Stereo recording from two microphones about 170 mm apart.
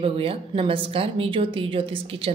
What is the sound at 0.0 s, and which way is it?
A woman's voice, 35° right (ahead or behind).